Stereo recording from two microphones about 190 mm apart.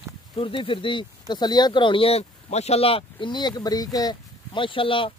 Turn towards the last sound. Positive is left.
turn(degrees=25)  # may be behind; listen again after turning